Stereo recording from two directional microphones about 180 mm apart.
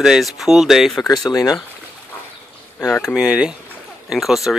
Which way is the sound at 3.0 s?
5° right (ahead or behind).